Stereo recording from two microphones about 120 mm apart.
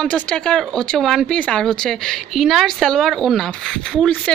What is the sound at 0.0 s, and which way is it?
Speech, 10° left (ahead or behind).